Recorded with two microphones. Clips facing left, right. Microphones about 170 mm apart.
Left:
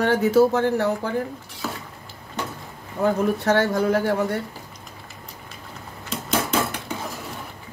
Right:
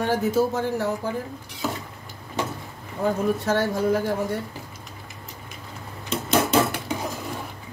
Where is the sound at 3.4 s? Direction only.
70° left (ahead or behind).